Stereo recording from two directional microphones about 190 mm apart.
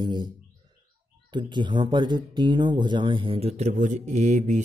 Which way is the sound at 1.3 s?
25° right (ahead or behind).